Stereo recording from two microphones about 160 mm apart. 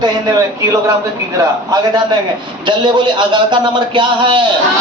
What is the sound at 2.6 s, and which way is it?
A man's voice, 30° right (ahead or behind).